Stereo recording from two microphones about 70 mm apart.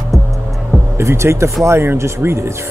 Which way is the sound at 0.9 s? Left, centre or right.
Right.